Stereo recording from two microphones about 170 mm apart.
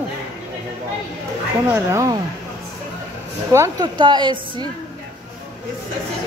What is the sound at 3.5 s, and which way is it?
A woman's voice, 20° right (ahead or behind).